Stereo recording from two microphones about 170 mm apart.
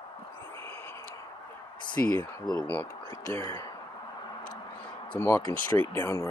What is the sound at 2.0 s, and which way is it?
Speech, 15° left (ahead or behind).